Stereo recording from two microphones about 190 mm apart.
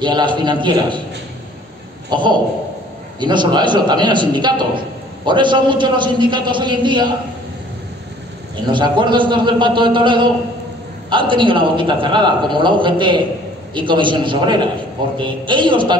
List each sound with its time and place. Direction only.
0.0 s a man's voice: 25° right (ahead or behind)
2.0 s a man's voice: 25° right (ahead or behind)
8.6 s a man's voice: 25° right (ahead or behind)